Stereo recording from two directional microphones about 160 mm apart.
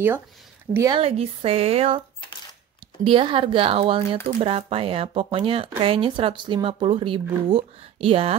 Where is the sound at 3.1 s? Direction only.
35° right (ahead or behind).